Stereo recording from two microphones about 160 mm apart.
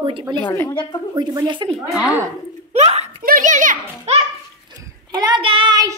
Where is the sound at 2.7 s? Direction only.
40° right (ahead or behind).